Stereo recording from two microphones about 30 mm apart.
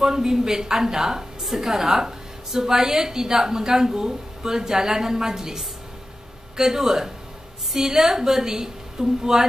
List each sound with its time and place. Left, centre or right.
0.0 s a woman's voice: centre